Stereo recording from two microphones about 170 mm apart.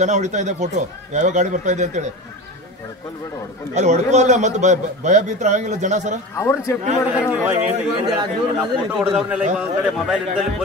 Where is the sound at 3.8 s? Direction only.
45° right (ahead or behind).